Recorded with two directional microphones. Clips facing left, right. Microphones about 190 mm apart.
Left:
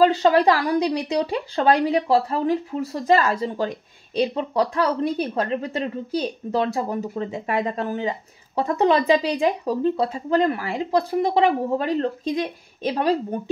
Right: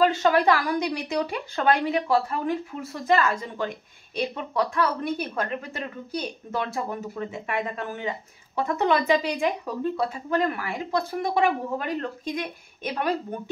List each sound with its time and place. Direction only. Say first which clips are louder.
0.0 s speech: left 4 dB; 30° left (ahead or behind)